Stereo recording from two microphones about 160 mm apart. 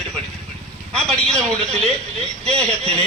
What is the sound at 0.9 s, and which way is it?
Speech, 5° left (ahead or behind).